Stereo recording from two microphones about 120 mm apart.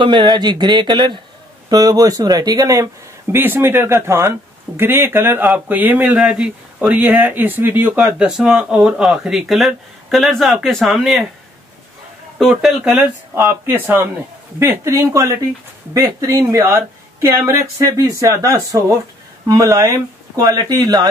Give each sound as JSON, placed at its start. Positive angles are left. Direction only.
{"t": 0.0, "sound": "speech", "side_deg": -40}
{"t": 8.0, "sound": "speech", "side_deg": -5}
{"t": 12.4, "sound": "speech", "side_deg": 0}
{"t": 12.9, "sound": "speech", "side_deg": -10}